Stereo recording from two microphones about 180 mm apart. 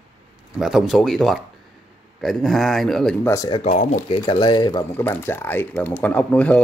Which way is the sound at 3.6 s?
40° left (ahead or behind).